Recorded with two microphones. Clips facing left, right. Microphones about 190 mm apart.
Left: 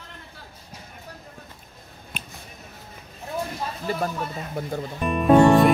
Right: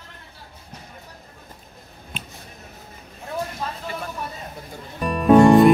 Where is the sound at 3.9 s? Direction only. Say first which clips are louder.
Left 5 dB; 35° left (ahead or behind).